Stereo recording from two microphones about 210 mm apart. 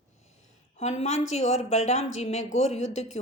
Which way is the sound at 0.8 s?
30° left (ahead or behind).